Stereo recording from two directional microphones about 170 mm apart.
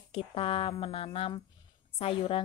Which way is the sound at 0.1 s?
35° left (ahead or behind).